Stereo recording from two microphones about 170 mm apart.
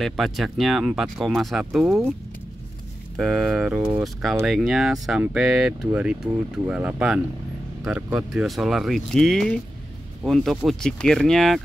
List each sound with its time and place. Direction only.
0.0 s speech: centre (ahead or behind)
3.2 s speech: centre (ahead or behind)